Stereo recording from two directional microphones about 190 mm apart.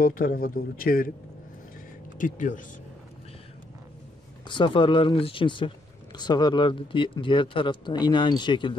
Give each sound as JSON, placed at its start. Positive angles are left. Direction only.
{"t": 0.0, "sound": "a man's voice", "side_deg": 50}
{"t": 2.1, "sound": "a man's voice", "side_deg": 45}
{"t": 4.5, "sound": "speech", "side_deg": 25}